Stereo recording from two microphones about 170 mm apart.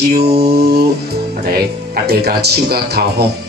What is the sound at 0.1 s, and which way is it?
Music, 70° right (ahead or behind).